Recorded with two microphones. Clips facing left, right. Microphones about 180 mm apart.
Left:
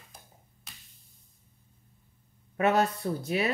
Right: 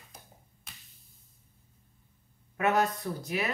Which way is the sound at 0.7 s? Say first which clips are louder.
Even; centre (ahead or behind).